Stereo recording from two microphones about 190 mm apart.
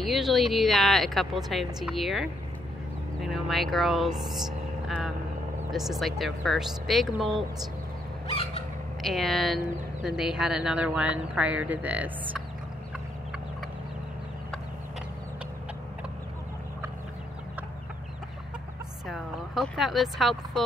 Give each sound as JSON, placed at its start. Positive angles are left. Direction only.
{"t": 0.0, "sound": "speech", "side_deg": 0}
{"t": 3.3, "sound": "speech", "side_deg": 0}
{"t": 4.3, "sound": "a sound", "side_deg": 0}
{"t": 5.7, "sound": "speech", "side_deg": 0}
{"t": 8.3, "sound": "bird", "side_deg": 30}
{"t": 9.0, "sound": "a woman's voice", "side_deg": 0}
{"t": 19.0, "sound": "speech", "side_deg": 0}